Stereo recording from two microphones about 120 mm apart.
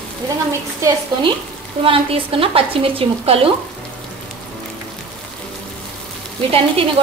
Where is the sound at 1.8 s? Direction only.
50° right (ahead or behind).